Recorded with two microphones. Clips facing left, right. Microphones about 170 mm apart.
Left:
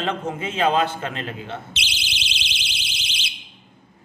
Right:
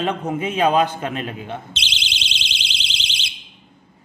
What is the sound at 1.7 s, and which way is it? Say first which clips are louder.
Alarm: right 1 dB; 5° left (ahead or behind).